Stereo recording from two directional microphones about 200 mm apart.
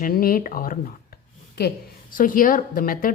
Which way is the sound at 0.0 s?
45° left (ahead or behind).